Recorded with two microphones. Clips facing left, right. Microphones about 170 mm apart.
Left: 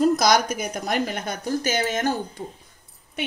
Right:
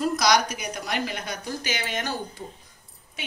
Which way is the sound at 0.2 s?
50° left (ahead or behind).